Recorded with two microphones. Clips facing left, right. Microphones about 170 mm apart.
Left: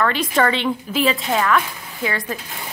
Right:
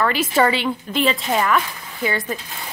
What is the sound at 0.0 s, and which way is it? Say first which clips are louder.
Speech: right 1 dB; 5° right (ahead or behind).